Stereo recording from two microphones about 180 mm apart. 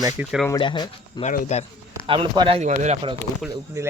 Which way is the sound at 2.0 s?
30° right (ahead or behind).